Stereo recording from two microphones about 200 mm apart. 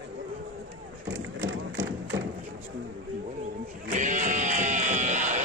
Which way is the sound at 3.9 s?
40° right (ahead or behind).